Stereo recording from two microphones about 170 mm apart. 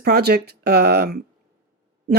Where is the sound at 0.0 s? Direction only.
70° right (ahead or behind).